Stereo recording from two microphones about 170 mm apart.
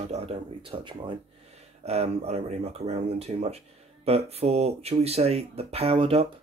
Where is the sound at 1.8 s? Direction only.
40° right (ahead or behind).